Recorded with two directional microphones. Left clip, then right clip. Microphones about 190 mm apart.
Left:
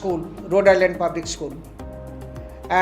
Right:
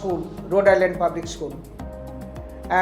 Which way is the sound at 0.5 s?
35° left (ahead or behind).